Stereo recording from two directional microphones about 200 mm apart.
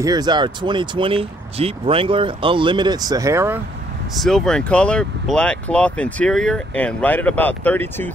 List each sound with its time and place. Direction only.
0.0 s speech: 20° right (ahead or behind)
4.1 s speech: centre (ahead or behind)